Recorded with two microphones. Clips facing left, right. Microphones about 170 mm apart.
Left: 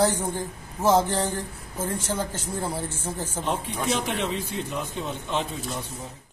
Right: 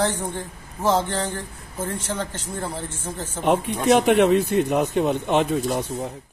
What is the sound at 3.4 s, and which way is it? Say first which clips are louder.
A man's voice: right 10 dB; 65° right (ahead or behind).